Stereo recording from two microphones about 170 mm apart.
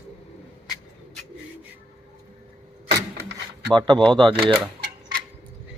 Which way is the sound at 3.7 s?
25° right (ahead or behind).